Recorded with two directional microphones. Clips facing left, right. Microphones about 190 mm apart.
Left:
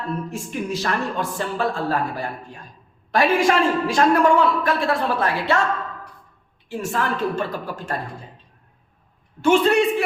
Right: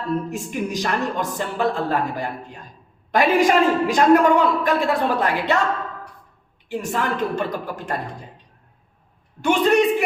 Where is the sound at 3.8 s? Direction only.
20° right (ahead or behind).